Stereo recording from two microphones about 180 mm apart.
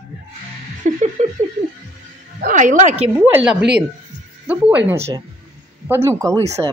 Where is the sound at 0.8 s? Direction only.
40° right (ahead or behind).